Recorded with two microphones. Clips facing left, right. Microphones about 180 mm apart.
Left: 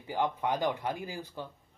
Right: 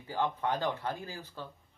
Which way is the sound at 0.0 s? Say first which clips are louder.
Left 1 dB; 15° left (ahead or behind).